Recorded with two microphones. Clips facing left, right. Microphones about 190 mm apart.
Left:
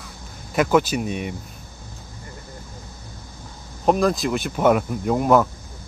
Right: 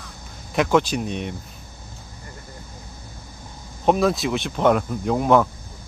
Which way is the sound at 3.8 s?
Centre (ahead or behind).